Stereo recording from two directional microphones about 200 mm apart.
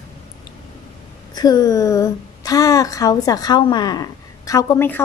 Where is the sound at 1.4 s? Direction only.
20° left (ahead or behind).